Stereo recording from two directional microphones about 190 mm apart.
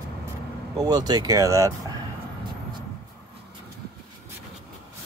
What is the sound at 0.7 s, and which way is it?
Speech, 20° right (ahead or behind).